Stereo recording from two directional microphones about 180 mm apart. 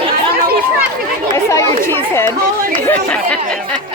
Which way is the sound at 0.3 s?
55° right (ahead or behind).